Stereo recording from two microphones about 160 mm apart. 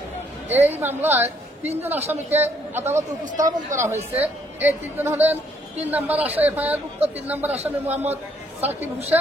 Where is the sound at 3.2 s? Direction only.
55° right (ahead or behind).